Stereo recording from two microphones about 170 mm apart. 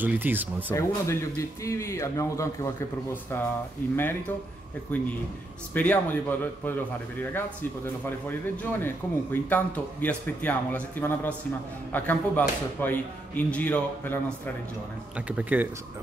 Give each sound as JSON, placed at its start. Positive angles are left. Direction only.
{"t": 0.0, "sound": "speech", "side_deg": -10}
{"t": 0.7, "sound": "speech", "side_deg": 15}
{"t": 3.9, "sound": "speech", "side_deg": 15}
{"t": 15.1, "sound": "speech", "side_deg": -5}